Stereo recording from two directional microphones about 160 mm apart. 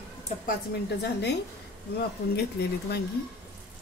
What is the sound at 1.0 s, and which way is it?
Speech, 90° left.